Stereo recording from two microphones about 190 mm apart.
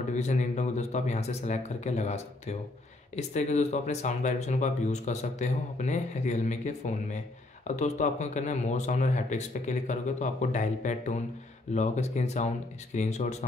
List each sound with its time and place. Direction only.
0.1 s speech: 40° left (ahead or behind)